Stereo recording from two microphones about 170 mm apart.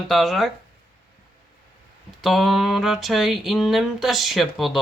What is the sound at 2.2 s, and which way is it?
Speech, centre (ahead or behind).